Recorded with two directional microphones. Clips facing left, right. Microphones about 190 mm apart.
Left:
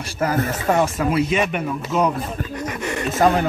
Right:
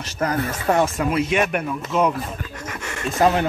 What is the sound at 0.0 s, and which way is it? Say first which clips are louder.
Speech: left 2 dB; 10° left (ahead or behind).